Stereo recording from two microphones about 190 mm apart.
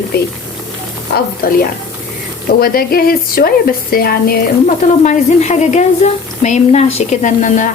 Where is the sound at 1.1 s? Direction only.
65° left (ahead or behind).